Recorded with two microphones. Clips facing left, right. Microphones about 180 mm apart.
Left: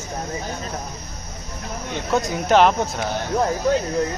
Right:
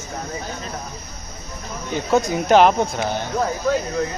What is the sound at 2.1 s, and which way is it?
Speech, centre (ahead or behind).